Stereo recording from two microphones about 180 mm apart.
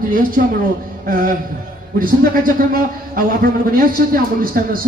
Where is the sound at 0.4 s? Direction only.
50° right (ahead or behind).